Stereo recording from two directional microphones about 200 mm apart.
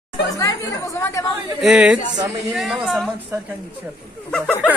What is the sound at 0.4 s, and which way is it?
Speech, 15° left (ahead or behind).